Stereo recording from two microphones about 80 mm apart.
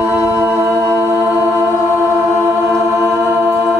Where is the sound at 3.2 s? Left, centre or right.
Right.